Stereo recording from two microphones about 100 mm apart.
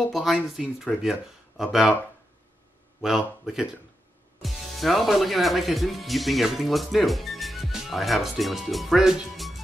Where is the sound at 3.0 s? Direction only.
5° right (ahead or behind).